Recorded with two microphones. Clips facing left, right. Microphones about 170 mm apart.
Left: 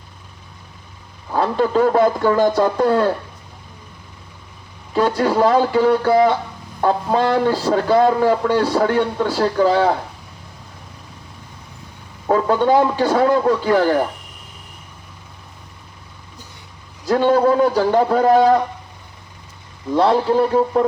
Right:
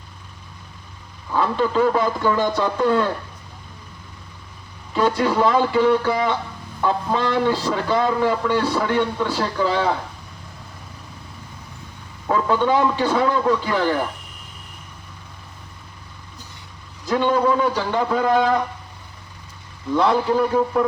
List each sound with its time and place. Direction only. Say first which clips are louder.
1.3 s speech: left 3 dB; 45° left (ahead or behind)
4.9 s speech: left 3 dB; 40° left (ahead or behind)
12.3 s speech: left 4 dB; 40° left (ahead or behind)
17.1 s speech: left 4 dB; 45° left (ahead or behind)
19.9 s speech: left 3 dB; 35° left (ahead or behind)